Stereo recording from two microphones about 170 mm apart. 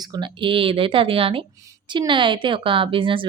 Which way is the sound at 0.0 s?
25° right (ahead or behind).